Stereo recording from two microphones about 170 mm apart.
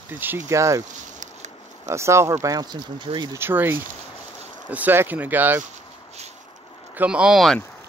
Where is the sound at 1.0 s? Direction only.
45° right (ahead or behind).